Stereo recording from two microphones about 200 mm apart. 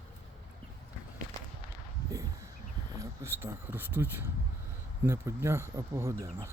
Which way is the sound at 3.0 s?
10° right (ahead or behind).